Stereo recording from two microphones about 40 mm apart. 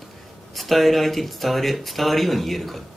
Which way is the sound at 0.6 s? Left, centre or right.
Centre.